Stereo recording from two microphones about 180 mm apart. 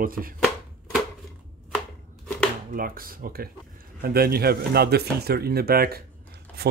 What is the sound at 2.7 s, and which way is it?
Speech, 55° right (ahead or behind).